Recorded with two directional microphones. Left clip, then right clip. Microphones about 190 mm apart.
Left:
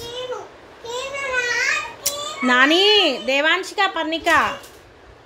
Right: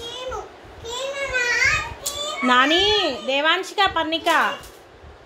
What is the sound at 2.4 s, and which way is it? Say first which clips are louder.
Speech: left 1 dB; 15° left (ahead or behind).